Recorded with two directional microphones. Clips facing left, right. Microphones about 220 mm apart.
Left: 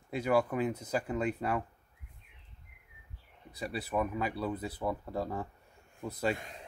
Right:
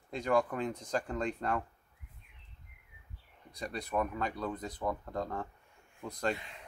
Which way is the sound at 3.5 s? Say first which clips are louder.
Left 1 dB; 5° left (ahead or behind).